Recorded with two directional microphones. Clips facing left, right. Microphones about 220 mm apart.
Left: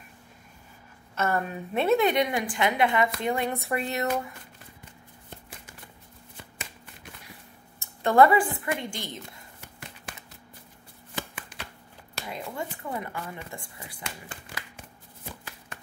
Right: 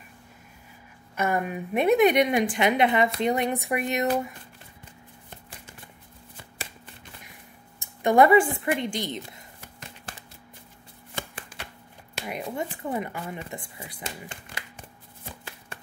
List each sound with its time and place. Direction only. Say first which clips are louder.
1.1 s a woman's voice: right 1 dB; 15° right (ahead or behind)
7.8 s a sound: right 1 dB; 15° right (ahead or behind)
8.7 s speech: right 6 dB; 20° right (ahead or behind)
12.3 s speech: right 4 dB; 20° right (ahead or behind)